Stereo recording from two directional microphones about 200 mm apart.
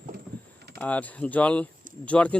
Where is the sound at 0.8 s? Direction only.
5° left (ahead or behind).